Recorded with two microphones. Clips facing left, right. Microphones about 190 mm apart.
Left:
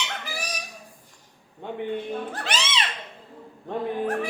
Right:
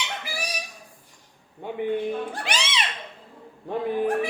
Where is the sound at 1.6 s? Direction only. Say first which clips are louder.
Right 4 dB; 10° right (ahead or behind).